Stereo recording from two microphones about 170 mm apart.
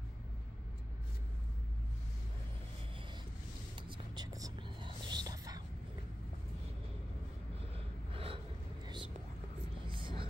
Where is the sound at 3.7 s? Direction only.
25° right (ahead or behind).